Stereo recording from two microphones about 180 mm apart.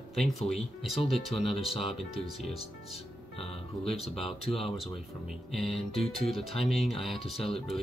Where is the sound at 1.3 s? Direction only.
35° left (ahead or behind).